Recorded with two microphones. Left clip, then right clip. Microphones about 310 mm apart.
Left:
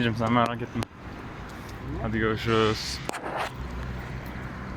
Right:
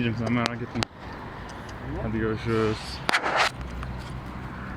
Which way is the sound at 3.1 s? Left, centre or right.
Right.